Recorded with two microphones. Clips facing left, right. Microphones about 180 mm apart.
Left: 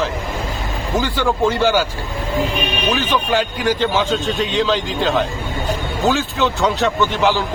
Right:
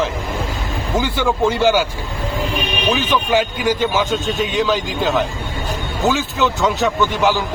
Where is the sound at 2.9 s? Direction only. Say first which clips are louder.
Right 2 dB; 10° right (ahead or behind).